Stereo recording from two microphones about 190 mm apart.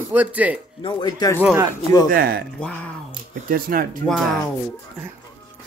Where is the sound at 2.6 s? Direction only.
5° left (ahead or behind).